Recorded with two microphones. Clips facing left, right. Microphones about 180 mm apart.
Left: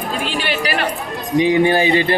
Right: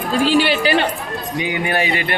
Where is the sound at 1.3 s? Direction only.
30° left (ahead or behind).